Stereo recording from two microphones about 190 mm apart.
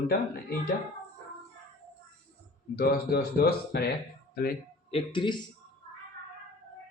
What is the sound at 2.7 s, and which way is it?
Speech, 55° left (ahead or behind).